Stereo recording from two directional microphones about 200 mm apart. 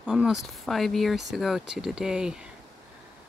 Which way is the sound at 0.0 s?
Centre (ahead or behind).